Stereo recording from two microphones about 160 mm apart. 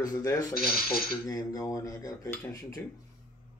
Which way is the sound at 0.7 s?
70° left (ahead or behind).